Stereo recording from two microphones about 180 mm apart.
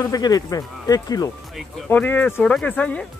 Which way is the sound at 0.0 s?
20° left (ahead or behind).